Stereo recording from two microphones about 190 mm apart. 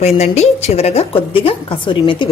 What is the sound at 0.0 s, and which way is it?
A woman's voice, 35° left (ahead or behind).